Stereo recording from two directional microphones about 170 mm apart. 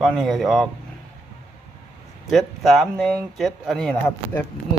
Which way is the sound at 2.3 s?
Centre (ahead or behind).